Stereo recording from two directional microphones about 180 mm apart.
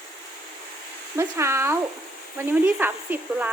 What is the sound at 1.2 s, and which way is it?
Speech, 15° right (ahead or behind).